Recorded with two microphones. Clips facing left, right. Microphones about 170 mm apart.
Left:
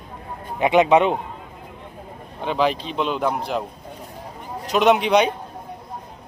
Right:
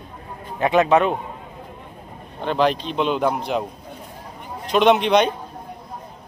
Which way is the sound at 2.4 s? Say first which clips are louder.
Right 1 dB; 5° left (ahead or behind).